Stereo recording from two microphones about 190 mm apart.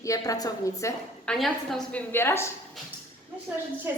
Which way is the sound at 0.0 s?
15° left (ahead or behind).